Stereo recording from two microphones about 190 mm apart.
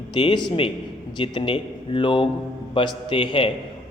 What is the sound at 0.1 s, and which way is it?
A man's voice, 25° left (ahead or behind).